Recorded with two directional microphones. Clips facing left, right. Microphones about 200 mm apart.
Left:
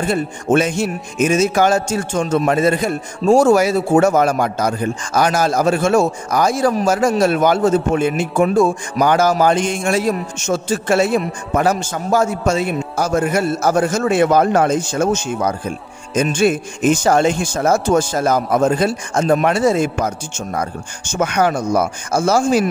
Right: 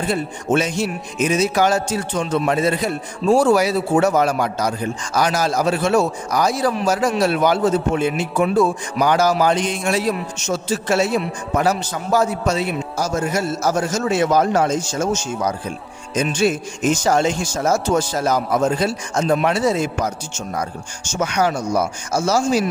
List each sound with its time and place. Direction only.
0.0 s speech: 50° left (ahead or behind)